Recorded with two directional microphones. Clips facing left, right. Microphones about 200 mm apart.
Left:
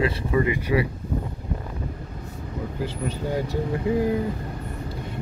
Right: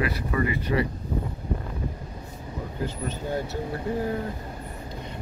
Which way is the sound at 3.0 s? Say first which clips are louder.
Left 4 dB; 10° left (ahead or behind).